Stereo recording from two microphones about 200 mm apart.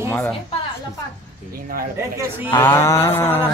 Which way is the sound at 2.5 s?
10° left (ahead or behind).